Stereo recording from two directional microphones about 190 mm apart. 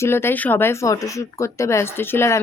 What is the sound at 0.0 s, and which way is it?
Speech, 10° left (ahead or behind).